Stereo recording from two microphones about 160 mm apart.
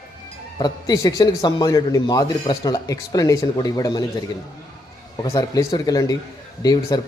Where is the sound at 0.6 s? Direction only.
25° left (ahead or behind).